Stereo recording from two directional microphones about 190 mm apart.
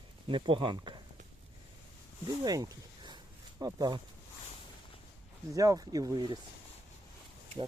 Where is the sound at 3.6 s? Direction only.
20° right (ahead or behind).